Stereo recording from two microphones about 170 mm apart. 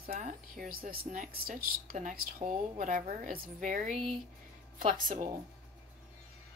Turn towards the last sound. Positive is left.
turn(degrees=-50)  # may be behind; listen again after turning